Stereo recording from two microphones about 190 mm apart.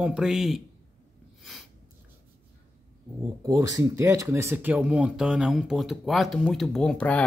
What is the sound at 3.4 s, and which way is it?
Speech, 15° right (ahead or behind).